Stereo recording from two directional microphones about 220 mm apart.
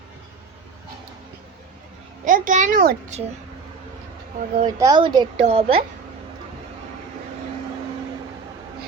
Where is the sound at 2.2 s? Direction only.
35° right (ahead or behind).